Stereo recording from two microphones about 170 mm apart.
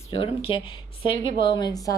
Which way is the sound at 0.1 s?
35° left (ahead or behind).